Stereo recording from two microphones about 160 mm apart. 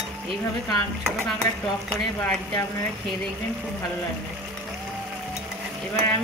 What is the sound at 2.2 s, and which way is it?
Speech, 15° left (ahead or behind).